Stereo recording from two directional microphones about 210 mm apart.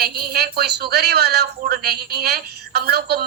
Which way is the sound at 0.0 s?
45° right (ahead or behind).